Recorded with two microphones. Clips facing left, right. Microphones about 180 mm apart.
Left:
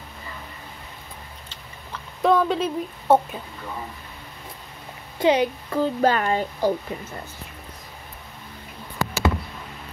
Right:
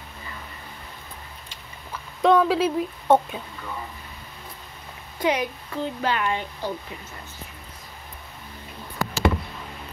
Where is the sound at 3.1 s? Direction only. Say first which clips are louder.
Left 1 dB; 10° left (ahead or behind).